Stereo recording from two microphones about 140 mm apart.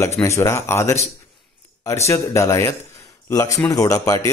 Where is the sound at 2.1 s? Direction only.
20° left (ahead or behind).